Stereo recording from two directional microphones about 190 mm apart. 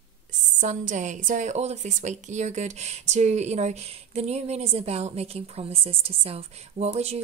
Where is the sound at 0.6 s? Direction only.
40° right (ahead or behind).